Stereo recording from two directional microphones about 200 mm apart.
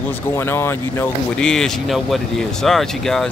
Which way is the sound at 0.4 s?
10° left (ahead or behind).